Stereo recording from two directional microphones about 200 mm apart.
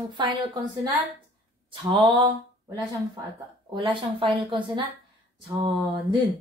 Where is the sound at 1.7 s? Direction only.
25° right (ahead or behind).